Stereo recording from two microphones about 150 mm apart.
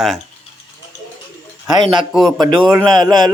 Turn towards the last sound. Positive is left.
turn(degrees=-25)  # may be behind; listen again after turning